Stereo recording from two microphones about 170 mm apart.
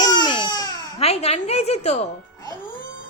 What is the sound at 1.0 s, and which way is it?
A woman's voice, 35° left (ahead or behind).